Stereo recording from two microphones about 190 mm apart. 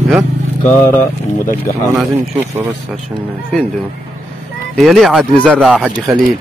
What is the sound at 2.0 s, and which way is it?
Speech, 10° right (ahead or behind).